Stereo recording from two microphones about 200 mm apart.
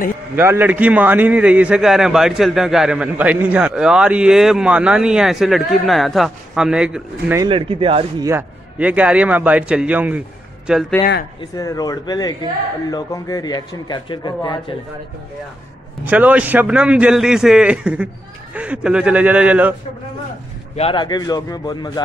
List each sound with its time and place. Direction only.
0.4 s a man's voice: 10° right (ahead or behind)
7.3 s speech: 25° right (ahead or behind)
8.3 s a man's voice: 10° right (ahead or behind)
11.5 s speech: 15° left (ahead or behind)
16.1 s a man's voice: 5° right (ahead or behind)
20.7 s speech: 25° left (ahead or behind)